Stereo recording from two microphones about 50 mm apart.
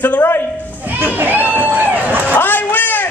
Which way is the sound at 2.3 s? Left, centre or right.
Left.